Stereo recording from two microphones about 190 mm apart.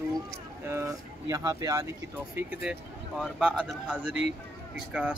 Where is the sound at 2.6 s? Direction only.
5° right (ahead or behind).